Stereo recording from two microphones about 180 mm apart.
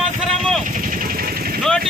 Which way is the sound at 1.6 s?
Centre (ahead or behind).